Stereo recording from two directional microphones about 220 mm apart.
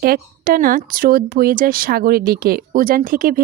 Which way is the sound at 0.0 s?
40° right (ahead or behind).